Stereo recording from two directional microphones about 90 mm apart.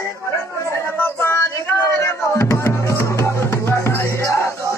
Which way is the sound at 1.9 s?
30° left (ahead or behind).